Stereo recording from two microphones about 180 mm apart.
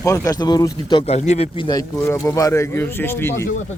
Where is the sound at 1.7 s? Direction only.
20° left (ahead or behind).